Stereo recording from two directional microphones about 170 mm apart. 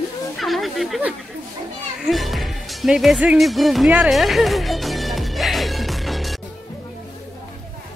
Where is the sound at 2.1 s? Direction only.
Centre (ahead or behind).